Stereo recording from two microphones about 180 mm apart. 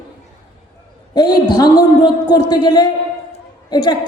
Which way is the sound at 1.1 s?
25° left (ahead or behind).